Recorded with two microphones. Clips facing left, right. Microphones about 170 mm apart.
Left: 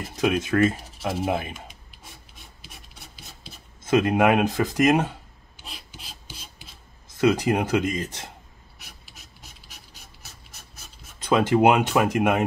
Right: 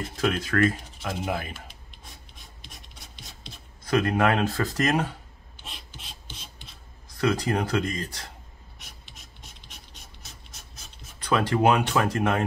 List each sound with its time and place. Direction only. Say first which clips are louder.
0.1 s speech: left 4 dB; 20° left (ahead or behind)
2.6 s rub: left 2 dB; 5° left (ahead or behind)
3.8 s speech: left 3 dB; 20° left (ahead or behind)
5.7 s rub: left 1 dB; centre (ahead or behind)
7.1 s speech: left 4 dB; 20° left (ahead or behind)
8.7 s a sound: left 1 dB; 5° left (ahead or behind)
11.1 s speech: left 4 dB; 20° left (ahead or behind)